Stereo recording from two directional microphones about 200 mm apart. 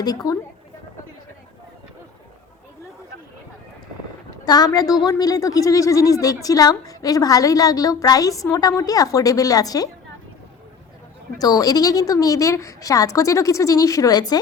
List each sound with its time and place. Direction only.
0.0 s a woman's voice: 20° left (ahead or behind)
4.4 s a woman's voice: 20° left (ahead or behind)
11.3 s a woman's voice: 20° left (ahead or behind)